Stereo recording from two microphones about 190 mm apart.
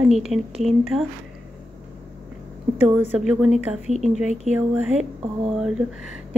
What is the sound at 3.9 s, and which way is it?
Speech, 35° right (ahead or behind).